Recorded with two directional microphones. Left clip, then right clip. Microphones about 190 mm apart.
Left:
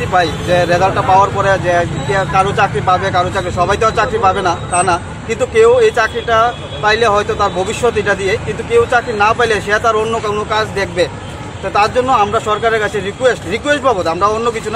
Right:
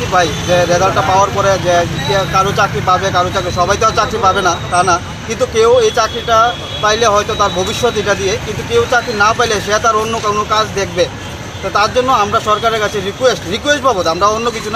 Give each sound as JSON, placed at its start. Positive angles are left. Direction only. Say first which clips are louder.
{"t": 0.1, "sound": "speech", "louder": "right 1 dB", "side_deg": 10}